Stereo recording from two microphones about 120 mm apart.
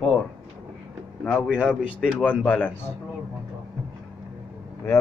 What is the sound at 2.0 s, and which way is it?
Speech, 10° left (ahead or behind).